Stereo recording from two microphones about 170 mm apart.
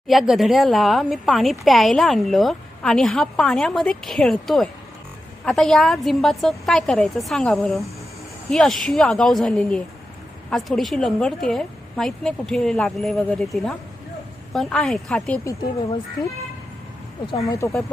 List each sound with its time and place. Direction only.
0.1 s speech: centre (ahead or behind)
17.6 s speech: 15° left (ahead or behind)